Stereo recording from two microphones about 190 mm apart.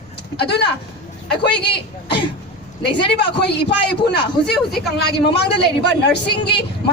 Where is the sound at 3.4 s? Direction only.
60° left (ahead or behind).